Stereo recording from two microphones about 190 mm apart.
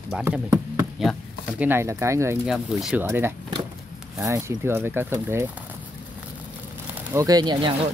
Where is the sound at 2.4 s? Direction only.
5° right (ahead or behind).